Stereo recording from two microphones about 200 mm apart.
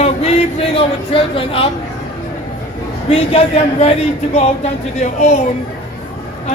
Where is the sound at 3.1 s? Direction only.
30° left (ahead or behind).